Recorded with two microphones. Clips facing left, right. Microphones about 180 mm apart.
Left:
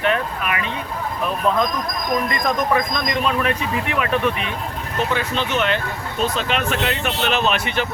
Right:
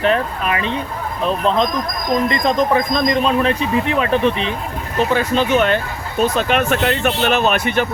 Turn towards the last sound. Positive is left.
turn(degrees=-50)  # may be behind; listen again after turning